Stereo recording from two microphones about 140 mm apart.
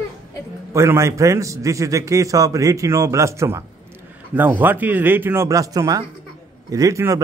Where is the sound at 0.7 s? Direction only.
20° right (ahead or behind).